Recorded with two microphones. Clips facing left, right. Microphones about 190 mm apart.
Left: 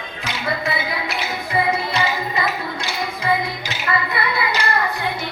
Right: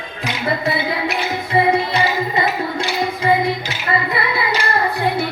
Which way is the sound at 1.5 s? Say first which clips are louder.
Right 5 dB; 25° right (ahead or behind).